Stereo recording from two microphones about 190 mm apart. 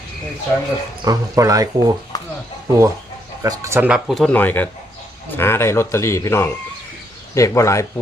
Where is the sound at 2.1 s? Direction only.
20° left (ahead or behind).